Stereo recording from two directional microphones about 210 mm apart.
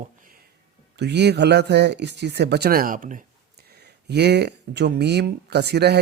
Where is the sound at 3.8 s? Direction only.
50° right (ahead or behind).